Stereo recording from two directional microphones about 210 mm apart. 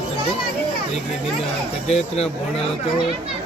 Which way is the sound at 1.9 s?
30° left (ahead or behind).